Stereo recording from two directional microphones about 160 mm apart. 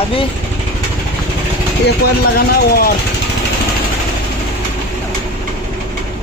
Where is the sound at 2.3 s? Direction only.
75° left (ahead or behind).